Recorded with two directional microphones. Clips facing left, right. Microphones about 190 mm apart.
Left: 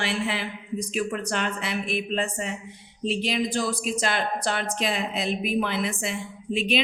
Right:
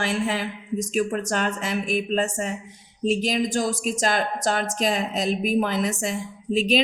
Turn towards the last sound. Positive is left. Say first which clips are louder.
# right 4 dB
turn(degrees=-40)  # may be behind; listen again after turning